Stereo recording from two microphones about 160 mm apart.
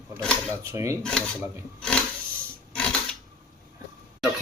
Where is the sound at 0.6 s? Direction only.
15° right (ahead or behind).